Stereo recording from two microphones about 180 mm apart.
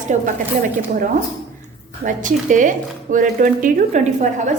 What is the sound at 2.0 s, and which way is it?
A woman's voice, 45° right (ahead or behind).